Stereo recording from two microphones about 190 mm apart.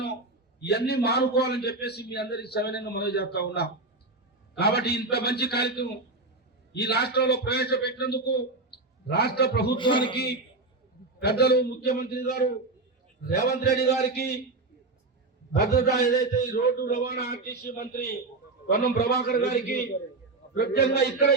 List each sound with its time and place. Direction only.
0.6 s a man's voice: 60° left (ahead or behind)
9.7 s speech: 25° left (ahead or behind)
11.2 s a man's voice: 60° left (ahead or behind)
13.2 s a man's voice: 55° left (ahead or behind)
15.5 s a man's voice: 60° left (ahead or behind)